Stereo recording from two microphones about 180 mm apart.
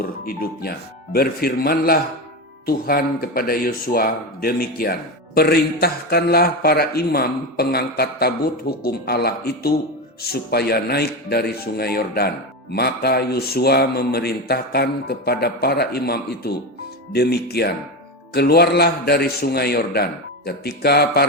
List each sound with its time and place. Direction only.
0.0 s speech: 55° left (ahead or behind)